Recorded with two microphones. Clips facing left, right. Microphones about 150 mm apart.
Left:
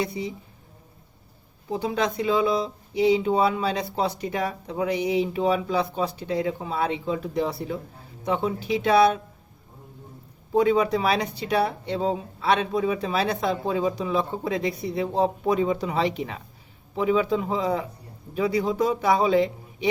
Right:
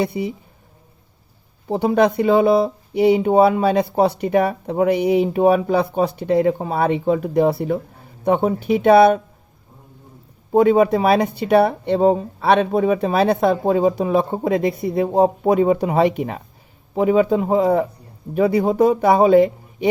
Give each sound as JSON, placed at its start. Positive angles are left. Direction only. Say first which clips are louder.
{"t": 0.0, "sound": "speech", "louder": "right 6 dB", "side_deg": -60}
{"t": 1.6, "sound": "speech", "louder": "right 9 dB", "side_deg": -60}
{"t": 10.5, "sound": "speech", "louder": "right 7 dB", "side_deg": -50}